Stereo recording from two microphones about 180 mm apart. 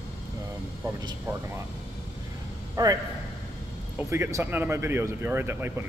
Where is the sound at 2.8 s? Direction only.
20° right (ahead or behind).